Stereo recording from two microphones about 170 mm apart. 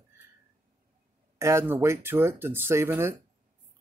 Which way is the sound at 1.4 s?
15° right (ahead or behind).